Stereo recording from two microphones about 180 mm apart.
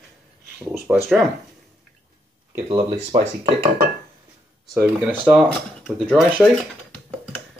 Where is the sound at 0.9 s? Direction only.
5° right (ahead or behind).